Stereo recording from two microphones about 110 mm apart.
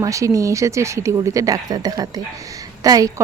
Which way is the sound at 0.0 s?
30° right (ahead or behind).